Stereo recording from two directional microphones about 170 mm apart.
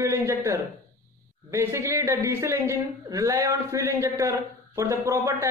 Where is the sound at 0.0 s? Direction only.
15° right (ahead or behind).